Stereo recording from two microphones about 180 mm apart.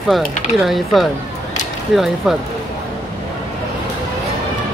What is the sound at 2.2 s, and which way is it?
Speech, centre (ahead or behind).